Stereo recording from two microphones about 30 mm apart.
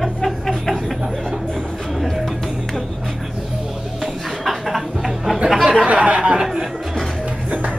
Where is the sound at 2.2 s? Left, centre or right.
Centre.